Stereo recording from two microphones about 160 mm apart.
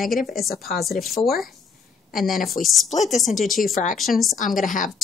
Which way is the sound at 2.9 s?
45° left (ahead or behind).